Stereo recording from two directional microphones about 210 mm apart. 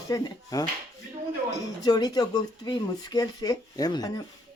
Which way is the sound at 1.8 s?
20° left (ahead or behind).